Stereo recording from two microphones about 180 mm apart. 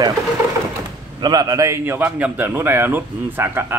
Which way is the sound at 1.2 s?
25° right (ahead or behind).